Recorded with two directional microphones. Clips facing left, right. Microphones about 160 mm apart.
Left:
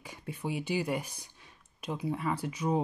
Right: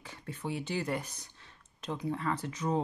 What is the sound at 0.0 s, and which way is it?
Speech, 10° left (ahead or behind).